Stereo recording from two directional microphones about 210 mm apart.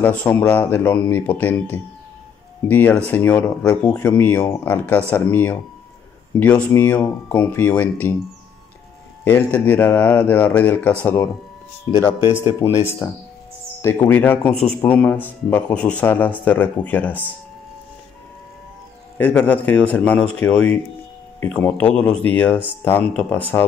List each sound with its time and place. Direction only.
0.0 s speech: 10° left (ahead or behind)
9.2 s speech: 10° left (ahead or behind)
19.1 s speech: 5° left (ahead or behind)